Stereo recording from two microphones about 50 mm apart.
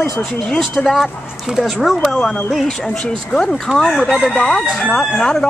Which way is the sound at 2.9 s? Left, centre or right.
Centre.